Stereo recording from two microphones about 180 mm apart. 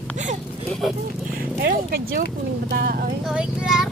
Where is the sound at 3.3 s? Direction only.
5° right (ahead or behind).